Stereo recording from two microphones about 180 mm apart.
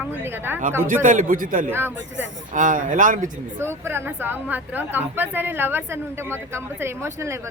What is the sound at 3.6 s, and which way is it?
A woman's voice, 15° right (ahead or behind).